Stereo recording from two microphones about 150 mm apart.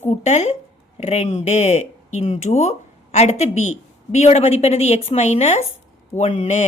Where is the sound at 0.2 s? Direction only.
50° left (ahead or behind).